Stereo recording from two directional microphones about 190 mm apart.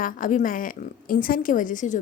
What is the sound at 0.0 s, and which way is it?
A woman's voice, 45° left (ahead or behind).